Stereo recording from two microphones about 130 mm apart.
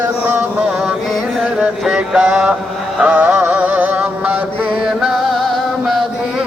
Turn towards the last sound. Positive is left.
turn(degrees=0)  # may be behind; listen again after turning